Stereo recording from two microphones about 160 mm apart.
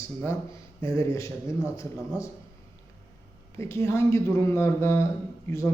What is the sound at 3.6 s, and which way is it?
Speech, 15° left (ahead or behind).